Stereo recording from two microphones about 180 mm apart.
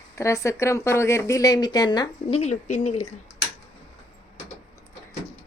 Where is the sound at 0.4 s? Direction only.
15° left (ahead or behind).